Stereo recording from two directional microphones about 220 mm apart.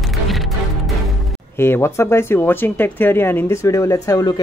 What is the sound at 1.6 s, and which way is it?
Speech, 10° left (ahead or behind).